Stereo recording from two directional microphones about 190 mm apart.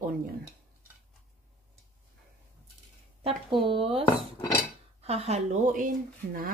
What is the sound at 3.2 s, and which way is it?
Speech, 30° right (ahead or behind).